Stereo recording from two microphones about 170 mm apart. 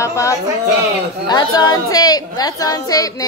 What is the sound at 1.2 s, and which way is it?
A woman's voice, 25° left (ahead or behind).